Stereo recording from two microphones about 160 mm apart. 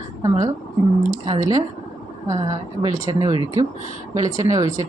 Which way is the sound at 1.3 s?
25° right (ahead or behind).